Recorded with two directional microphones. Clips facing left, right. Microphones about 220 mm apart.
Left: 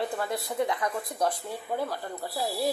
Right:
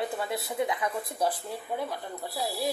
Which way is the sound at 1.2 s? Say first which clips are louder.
Left 1 dB; centre (ahead or behind).